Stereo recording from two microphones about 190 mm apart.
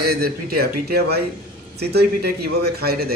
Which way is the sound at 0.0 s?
55° right (ahead or behind).